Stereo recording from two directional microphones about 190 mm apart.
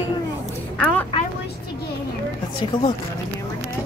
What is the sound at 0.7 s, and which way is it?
Speech, 10° left (ahead or behind).